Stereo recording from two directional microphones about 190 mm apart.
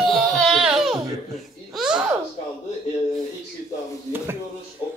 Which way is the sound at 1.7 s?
5° right (ahead or behind).